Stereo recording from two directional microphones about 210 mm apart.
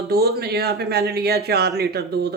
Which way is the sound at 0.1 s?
50° right (ahead or behind).